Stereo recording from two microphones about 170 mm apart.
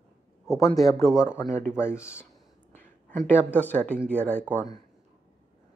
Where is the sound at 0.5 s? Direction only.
20° left (ahead or behind).